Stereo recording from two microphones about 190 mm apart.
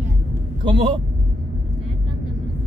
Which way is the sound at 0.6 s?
25° right (ahead or behind).